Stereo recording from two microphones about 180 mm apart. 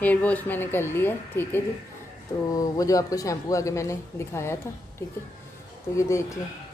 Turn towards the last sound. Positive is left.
turn(degrees=15)  # may be behind; listen again after turning